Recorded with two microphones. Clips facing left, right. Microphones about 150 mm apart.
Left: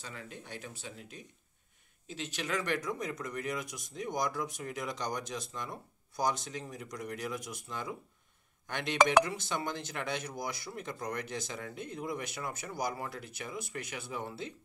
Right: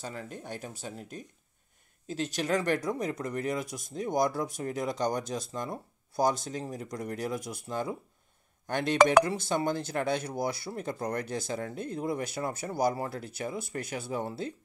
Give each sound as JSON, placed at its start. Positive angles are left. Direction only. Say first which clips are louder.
{"t": 0.0, "sound": "speech", "louder": "right 7 dB", "side_deg": -45}